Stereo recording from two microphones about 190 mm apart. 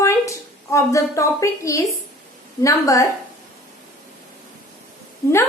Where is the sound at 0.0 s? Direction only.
15° left (ahead or behind).